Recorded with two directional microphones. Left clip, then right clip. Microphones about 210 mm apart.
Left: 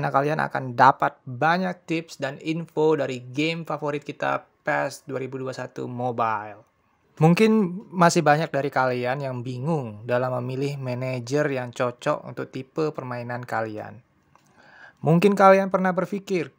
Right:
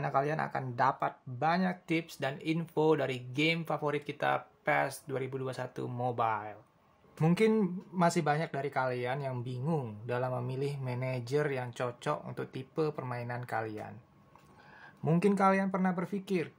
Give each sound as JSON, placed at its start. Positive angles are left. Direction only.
{"t": 0.0, "sound": "speech", "side_deg": 35}
{"t": 7.2, "sound": "speech", "side_deg": 45}
{"t": 15.0, "sound": "speech", "side_deg": 40}